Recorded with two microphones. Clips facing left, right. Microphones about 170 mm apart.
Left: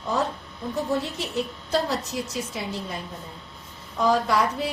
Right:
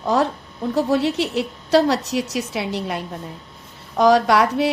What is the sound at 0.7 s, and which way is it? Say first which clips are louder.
A woman's voice: right 8 dB; 75° right (ahead or behind).